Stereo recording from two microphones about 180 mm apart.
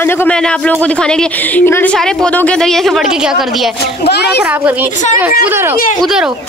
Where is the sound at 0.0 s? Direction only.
10° left (ahead or behind).